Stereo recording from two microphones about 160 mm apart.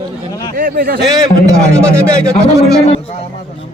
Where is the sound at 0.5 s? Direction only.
60° right (ahead or behind).